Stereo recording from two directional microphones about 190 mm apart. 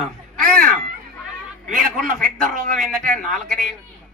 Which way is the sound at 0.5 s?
5° left (ahead or behind).